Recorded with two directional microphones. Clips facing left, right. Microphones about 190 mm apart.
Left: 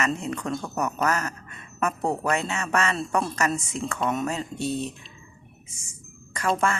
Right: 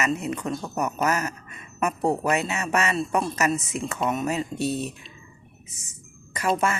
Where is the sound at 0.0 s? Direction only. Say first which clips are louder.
Right 1 dB; 5° right (ahead or behind).